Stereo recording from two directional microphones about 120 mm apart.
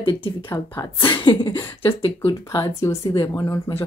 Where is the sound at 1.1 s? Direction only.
40° left (ahead or behind).